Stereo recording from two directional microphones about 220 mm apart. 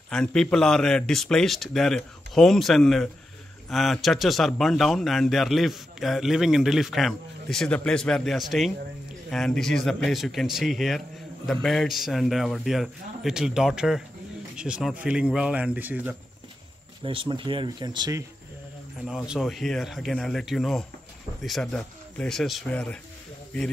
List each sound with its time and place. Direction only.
0.1 s a man's voice: 5° left (ahead or behind)
17.0 s speech: 25° right (ahead or behind)
19.0 s a man's voice: 5° right (ahead or behind)